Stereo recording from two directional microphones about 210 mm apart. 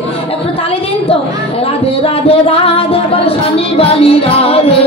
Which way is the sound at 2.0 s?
25° left (ahead or behind).